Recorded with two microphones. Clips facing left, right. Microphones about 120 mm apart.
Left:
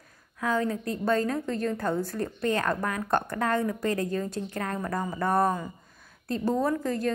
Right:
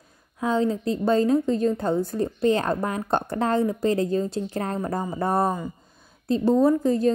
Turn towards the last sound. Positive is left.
turn(degrees=-25)  # may be behind; listen again after turning